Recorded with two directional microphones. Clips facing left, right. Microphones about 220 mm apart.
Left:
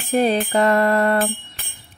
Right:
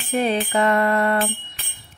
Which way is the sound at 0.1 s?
40° left (ahead or behind).